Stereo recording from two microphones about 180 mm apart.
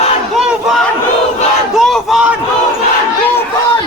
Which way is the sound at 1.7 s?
Centre (ahead or behind).